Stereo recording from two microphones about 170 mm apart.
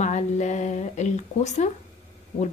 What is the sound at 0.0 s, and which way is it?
Speech, 45° left (ahead or behind).